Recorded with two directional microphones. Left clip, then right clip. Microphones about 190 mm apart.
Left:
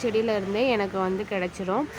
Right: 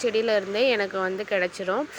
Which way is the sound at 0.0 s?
15° right (ahead or behind).